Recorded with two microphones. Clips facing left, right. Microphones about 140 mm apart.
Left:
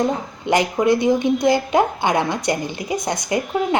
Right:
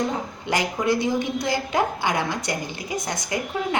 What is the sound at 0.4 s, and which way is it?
A woman's voice, 20° left (ahead or behind).